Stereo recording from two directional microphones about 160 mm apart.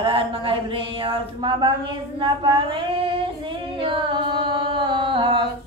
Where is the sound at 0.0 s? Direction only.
35° right (ahead or behind).